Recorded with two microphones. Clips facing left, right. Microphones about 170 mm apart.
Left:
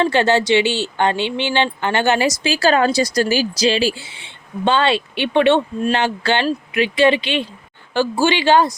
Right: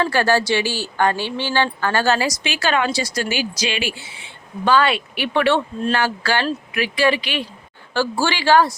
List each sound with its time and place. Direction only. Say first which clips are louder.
0.0 s speech: left 2 dB; 20° left (ahead or behind)
2.4 s speech: left 5 dB; 35° left (ahead or behind)